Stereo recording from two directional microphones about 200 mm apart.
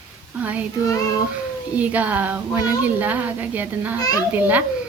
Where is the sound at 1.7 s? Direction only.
5° right (ahead or behind).